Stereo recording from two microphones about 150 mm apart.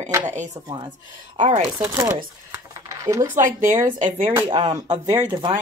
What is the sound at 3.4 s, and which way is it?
Speech, 60° right (ahead or behind).